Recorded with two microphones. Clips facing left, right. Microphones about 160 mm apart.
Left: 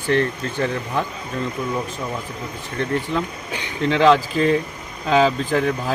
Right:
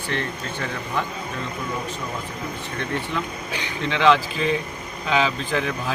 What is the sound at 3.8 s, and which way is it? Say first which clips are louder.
Speech: left 4 dB; 40° left (ahead or behind).